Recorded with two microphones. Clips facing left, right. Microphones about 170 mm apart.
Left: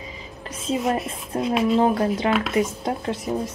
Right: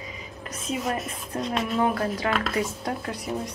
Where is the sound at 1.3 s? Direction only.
25° left (ahead or behind).